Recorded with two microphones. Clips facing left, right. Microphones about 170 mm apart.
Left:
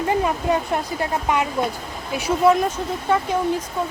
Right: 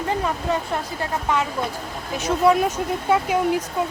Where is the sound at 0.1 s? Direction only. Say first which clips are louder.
Left 3 dB; 15° left (ahead or behind).